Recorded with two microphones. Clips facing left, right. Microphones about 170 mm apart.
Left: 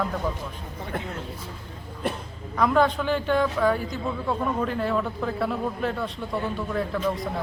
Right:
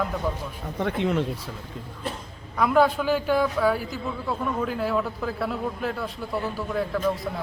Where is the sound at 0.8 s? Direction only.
75° right (ahead or behind).